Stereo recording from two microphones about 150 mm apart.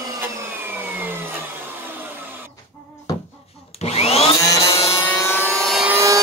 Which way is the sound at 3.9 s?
45° left (ahead or behind).